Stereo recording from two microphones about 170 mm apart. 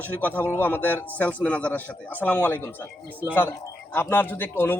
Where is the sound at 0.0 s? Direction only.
10° left (ahead or behind).